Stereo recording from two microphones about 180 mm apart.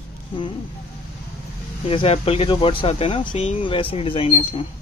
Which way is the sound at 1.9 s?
30° left (ahead or behind).